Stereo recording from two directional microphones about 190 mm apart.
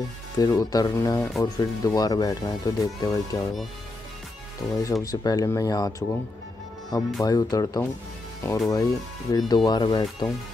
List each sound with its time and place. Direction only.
0.4 s speech: 20° left (ahead or behind)
4.8 s speech: 15° left (ahead or behind)